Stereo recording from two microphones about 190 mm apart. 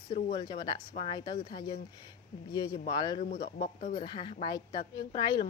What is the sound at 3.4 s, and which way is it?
Speech, 55° left (ahead or behind).